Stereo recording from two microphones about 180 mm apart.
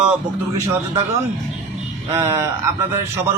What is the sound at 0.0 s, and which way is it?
Speech, 5° right (ahead or behind).